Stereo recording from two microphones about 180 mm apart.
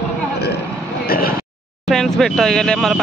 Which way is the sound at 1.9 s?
Centre (ahead or behind).